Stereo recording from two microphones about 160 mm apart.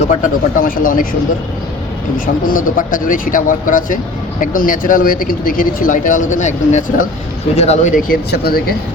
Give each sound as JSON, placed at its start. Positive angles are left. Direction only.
{"t": 0.0, "sound": "speech", "side_deg": 50}
{"t": 2.1, "sound": "speech", "side_deg": 60}
{"t": 7.9, "sound": "speech", "side_deg": 75}